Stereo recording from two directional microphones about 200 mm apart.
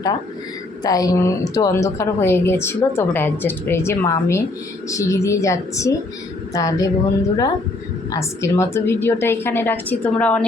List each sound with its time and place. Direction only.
0.9 s a woman's voice: 15° left (ahead or behind)